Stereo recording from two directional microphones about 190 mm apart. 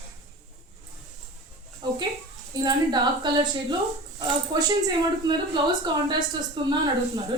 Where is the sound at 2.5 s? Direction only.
20° right (ahead or behind).